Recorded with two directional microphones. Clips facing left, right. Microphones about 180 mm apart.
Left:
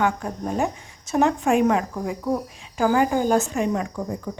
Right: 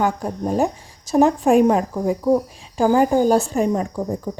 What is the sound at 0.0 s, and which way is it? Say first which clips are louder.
A woman's voice: right 3 dB; 35° right (ahead or behind).